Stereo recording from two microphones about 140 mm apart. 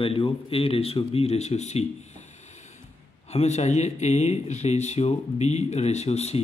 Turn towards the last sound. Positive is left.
turn(degrees=50)  # may be behind; listen again after turning